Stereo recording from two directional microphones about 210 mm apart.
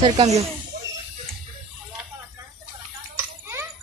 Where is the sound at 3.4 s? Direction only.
10° right (ahead or behind).